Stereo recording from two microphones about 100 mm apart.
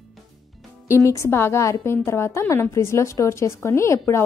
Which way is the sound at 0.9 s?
30° left (ahead or behind).